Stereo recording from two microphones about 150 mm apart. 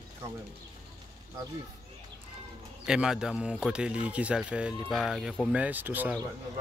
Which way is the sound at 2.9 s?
5° right (ahead or behind).